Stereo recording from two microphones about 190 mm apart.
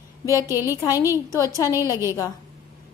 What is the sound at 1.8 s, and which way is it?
Speech, 15° right (ahead or behind).